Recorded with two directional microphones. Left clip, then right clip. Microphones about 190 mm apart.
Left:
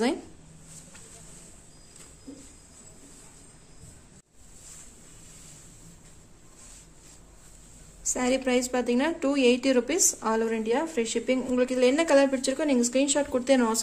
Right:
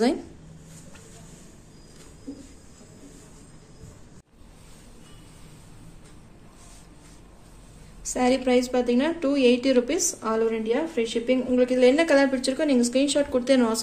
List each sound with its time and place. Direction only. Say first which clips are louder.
8.0 s a woman's voice: right 4 dB; 45° left (ahead or behind)